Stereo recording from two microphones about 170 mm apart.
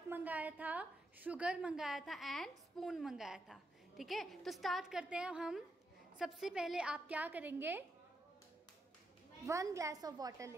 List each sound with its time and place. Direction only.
0.1 s a woman's voice: 10° right (ahead or behind)
9.5 s a woman's voice: 20° right (ahead or behind)